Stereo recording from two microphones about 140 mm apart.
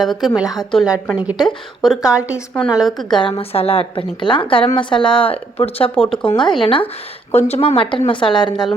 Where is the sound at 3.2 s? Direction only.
40° left (ahead or behind).